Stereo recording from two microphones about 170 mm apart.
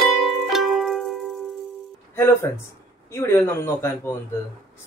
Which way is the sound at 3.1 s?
15° left (ahead or behind).